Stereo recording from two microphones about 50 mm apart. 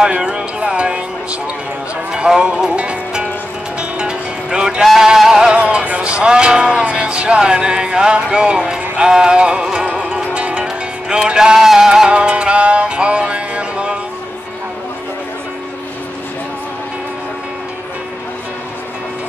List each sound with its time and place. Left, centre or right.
0.0 s a sound: centre
2.1 s speech: centre
4.0 s music: centre